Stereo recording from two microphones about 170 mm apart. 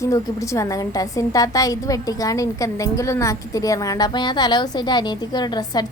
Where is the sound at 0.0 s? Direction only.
20° left (ahead or behind).